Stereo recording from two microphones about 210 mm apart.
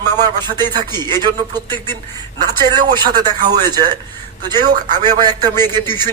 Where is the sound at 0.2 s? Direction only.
20° right (ahead or behind).